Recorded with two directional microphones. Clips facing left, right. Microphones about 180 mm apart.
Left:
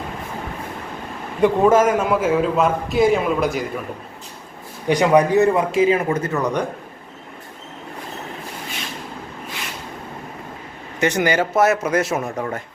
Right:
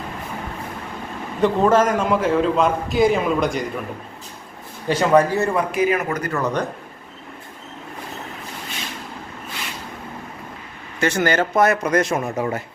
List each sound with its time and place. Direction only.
1.4 s a man's voice: 10° left (ahead or behind)
4.9 s speech: 15° left (ahead or behind)
6.4 s speech: 10° left (ahead or behind)
11.0 s speech: 15° left (ahead or behind)
12.4 s speech: 5° right (ahead or behind)